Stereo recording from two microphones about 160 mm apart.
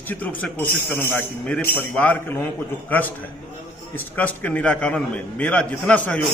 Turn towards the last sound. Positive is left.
turn(degrees=10)  # may be behind; listen again after turning